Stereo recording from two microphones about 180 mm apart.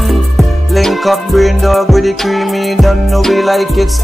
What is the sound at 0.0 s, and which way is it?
Music, centre (ahead or behind).